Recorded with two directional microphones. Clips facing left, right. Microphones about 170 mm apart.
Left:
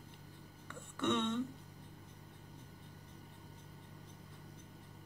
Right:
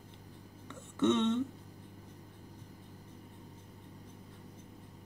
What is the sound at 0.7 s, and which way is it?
Throat clearing, 20° right (ahead or behind).